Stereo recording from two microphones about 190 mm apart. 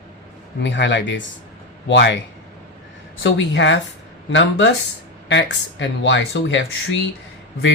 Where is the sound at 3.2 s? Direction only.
70° left (ahead or behind).